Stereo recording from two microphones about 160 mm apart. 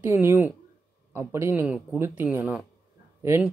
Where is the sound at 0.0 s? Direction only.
15° right (ahead or behind).